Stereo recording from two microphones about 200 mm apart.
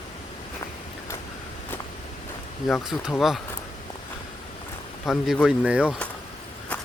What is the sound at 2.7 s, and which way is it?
Speech, centre (ahead or behind).